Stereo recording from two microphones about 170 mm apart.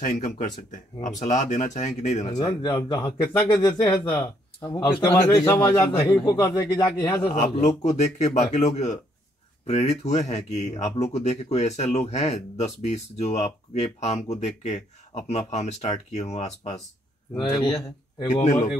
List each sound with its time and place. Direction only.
0.0 s speech: 50° left (ahead or behind)
2.3 s a man's voice: 25° left (ahead or behind)
4.6 s a man's voice: 20° left (ahead or behind)
7.4 s speech: 45° left (ahead or behind)
17.4 s a man's voice: 25° left (ahead or behind)
18.3 s speech: 45° left (ahead or behind)